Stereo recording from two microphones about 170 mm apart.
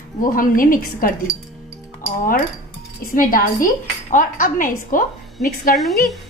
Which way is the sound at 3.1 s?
55° left (ahead or behind).